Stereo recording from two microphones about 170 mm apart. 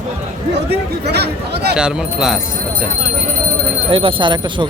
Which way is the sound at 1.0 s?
75° right (ahead or behind).